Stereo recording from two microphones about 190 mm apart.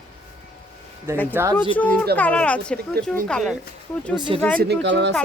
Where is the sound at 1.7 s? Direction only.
10° left (ahead or behind).